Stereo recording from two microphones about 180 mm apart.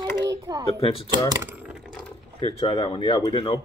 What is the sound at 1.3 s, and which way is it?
Typing, 10° right (ahead or behind).